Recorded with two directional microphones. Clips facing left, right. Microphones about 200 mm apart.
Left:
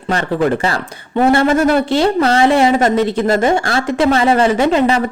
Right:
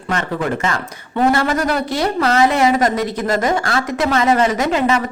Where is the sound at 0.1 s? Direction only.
35° left (ahead or behind).